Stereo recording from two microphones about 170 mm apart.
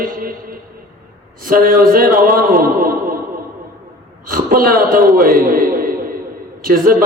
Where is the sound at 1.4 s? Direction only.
55° right (ahead or behind).